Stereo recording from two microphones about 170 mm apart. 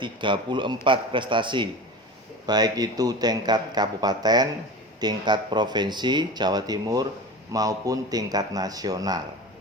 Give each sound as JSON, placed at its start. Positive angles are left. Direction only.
{"t": 0.0, "sound": "speech", "side_deg": -30}